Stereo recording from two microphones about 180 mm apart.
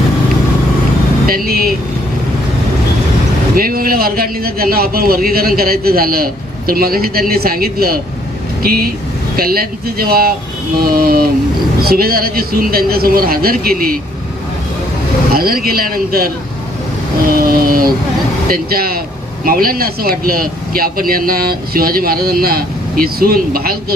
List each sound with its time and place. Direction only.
1.3 s a man's voice: 55° right (ahead or behind)
3.5 s a man's voice: 55° right (ahead or behind)
15.3 s a man's voice: 55° right (ahead or behind)
17.3 s a sound: 55° right (ahead or behind)
18.4 s a man's voice: 55° right (ahead or behind)